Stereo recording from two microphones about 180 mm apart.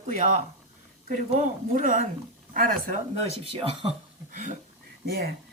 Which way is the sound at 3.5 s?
30° right (ahead or behind).